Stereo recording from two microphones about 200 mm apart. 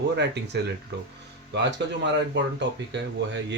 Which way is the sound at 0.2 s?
60° right (ahead or behind).